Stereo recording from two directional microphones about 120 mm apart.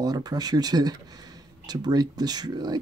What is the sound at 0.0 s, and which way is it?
Speech, 35° right (ahead or behind).